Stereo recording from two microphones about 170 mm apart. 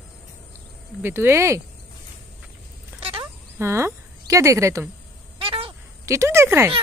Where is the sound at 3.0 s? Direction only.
35° right (ahead or behind).